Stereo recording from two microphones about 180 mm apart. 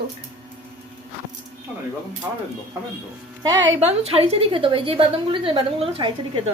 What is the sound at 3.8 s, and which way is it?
A woman's voice, 35° right (ahead or behind).